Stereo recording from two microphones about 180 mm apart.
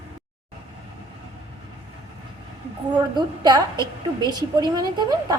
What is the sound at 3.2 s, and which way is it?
A woman's voice, 25° right (ahead or behind).